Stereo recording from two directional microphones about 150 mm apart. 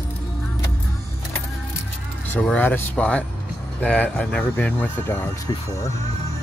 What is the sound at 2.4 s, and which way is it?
Speech, 10° left (ahead or behind).